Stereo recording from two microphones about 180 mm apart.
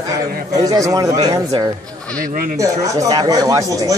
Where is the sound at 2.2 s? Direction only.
50° right (ahead or behind).